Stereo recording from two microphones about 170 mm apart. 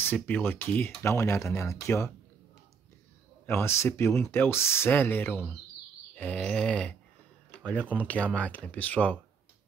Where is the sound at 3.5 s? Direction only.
15° left (ahead or behind).